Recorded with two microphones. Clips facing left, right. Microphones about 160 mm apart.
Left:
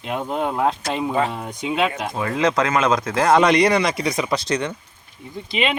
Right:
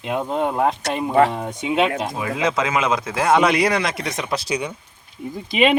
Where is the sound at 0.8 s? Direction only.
70° right (ahead or behind).